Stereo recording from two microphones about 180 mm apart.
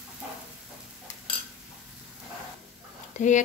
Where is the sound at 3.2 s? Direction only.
45° left (ahead or behind).